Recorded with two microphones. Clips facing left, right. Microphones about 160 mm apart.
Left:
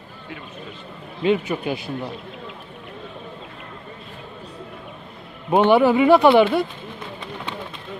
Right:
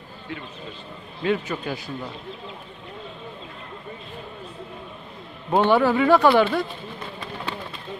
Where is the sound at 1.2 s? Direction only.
15° left (ahead or behind).